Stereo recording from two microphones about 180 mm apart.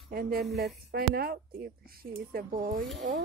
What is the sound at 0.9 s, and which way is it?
A woman's voice, 60° right (ahead or behind).